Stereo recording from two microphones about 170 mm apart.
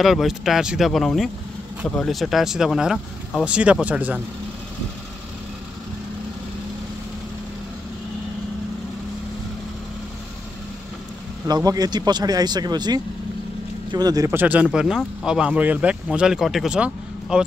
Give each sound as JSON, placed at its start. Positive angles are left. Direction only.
{"t": 0.0, "sound": "speech", "side_deg": 0}
{"t": 11.4, "sound": "speech", "side_deg": -20}